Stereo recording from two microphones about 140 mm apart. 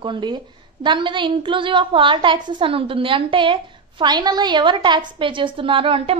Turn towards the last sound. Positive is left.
turn(degrees=-40)  # may be behind; listen again after turning